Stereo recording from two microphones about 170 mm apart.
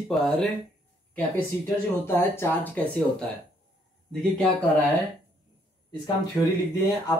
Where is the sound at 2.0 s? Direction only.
15° left (ahead or behind).